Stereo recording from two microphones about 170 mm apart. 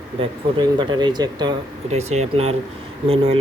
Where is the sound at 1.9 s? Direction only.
40° right (ahead or behind).